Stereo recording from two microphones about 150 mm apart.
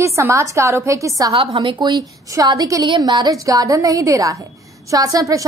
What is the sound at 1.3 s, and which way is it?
A woman's voice, 40° right (ahead or behind).